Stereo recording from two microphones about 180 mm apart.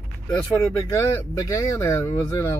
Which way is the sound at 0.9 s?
15° left (ahead or behind).